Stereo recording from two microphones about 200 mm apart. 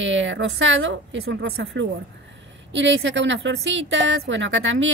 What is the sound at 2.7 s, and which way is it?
A woman's voice, 70° right (ahead or behind).